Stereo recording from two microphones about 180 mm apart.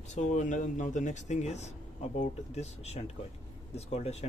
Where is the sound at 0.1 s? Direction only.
40° left (ahead or behind).